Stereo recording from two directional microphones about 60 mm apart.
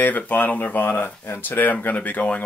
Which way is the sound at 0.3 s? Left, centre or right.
Left.